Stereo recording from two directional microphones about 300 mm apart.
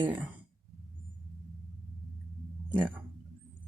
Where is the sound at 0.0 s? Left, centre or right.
Centre.